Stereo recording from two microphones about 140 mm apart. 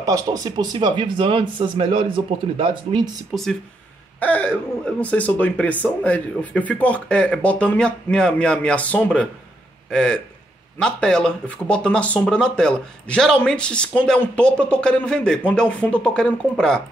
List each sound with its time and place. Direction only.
0.0 s speech: 25° right (ahead or behind)
3.3 s speech: 10° right (ahead or behind)
4.2 s a man's voice: 10° left (ahead or behind)